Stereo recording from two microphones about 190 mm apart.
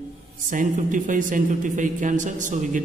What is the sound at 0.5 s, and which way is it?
Speech, 45° right (ahead or behind).